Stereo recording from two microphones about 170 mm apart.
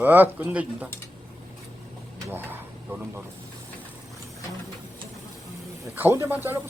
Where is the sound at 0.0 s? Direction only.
10° right (ahead or behind).